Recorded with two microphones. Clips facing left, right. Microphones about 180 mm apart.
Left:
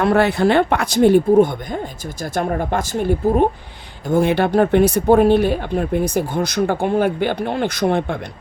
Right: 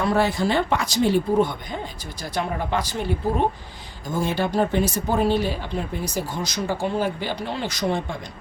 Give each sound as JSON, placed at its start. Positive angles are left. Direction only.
{"t": 0.0, "sound": "speech", "side_deg": 65}
{"t": 4.1, "sound": "speech", "side_deg": 65}